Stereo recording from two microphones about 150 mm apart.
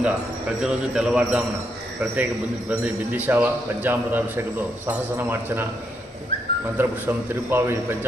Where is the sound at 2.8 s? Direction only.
10° right (ahead or behind).